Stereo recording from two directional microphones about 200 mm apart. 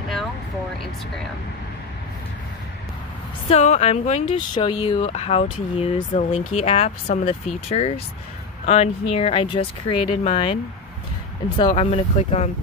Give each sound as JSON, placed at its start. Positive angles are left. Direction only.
{"t": 3.4, "sound": "speech", "side_deg": 35}